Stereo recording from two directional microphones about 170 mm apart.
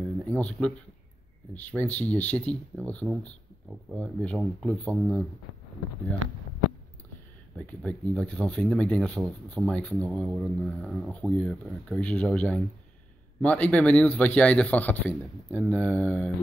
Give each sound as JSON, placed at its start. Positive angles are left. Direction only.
{"t": 0.2, "sound": "a man's voice", "side_deg": 5}
{"t": 7.5, "sound": "speech", "side_deg": 10}